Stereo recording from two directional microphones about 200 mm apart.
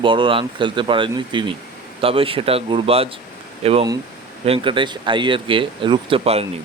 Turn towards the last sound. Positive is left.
turn(degrees=-30)  # may be behind; listen again after turning